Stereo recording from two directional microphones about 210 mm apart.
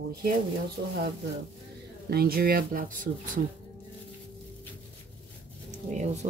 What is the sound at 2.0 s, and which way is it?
Speech, 45° right (ahead or behind).